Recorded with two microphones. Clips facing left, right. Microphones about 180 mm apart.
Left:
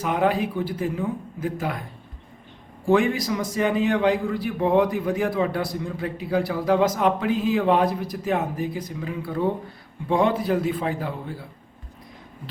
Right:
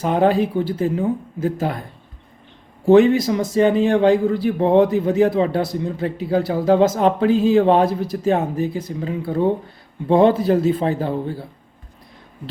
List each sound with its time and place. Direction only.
0.0 s a man's voice: 30° right (ahead or behind)
2.8 s a man's voice: 25° right (ahead or behind)